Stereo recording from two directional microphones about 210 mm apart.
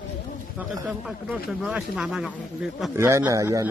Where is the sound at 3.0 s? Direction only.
15° right (ahead or behind).